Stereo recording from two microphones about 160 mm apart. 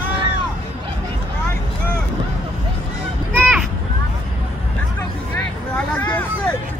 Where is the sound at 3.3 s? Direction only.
10° right (ahead or behind).